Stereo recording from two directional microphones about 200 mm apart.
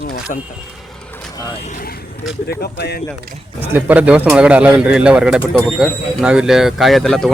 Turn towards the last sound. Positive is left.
turn(degrees=0)  # may be behind; listen again after turning